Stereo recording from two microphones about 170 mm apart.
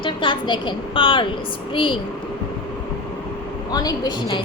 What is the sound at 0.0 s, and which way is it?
A woman's voice, 30° left (ahead or behind).